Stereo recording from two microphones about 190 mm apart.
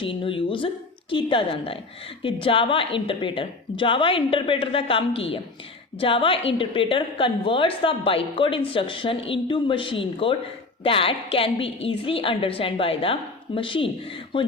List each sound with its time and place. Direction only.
0.0 s a woman's voice: 25° left (ahead or behind)